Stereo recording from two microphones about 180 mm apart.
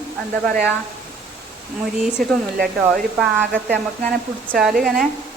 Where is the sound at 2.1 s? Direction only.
Centre (ahead or behind).